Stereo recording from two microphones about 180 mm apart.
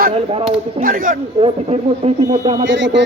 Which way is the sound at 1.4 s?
35° right (ahead or behind).